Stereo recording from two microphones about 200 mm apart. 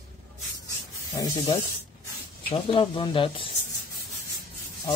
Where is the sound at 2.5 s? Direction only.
25° left (ahead or behind).